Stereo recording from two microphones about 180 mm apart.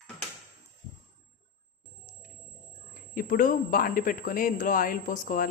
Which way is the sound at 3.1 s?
50° left (ahead or behind).